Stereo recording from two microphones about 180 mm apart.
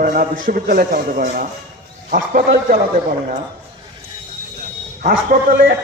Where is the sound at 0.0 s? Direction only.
50° right (ahead or behind).